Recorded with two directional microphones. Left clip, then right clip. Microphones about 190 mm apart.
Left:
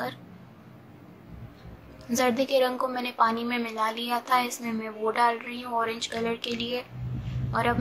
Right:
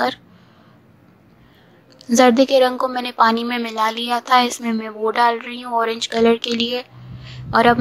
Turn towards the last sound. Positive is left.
turn(degrees=-45)  # may be behind; listen again after turning